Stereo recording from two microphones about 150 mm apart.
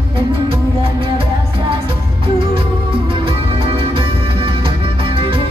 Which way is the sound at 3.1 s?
35° right (ahead or behind).